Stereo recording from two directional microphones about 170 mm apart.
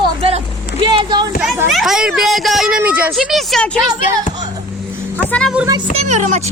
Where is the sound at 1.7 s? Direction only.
Centre (ahead or behind).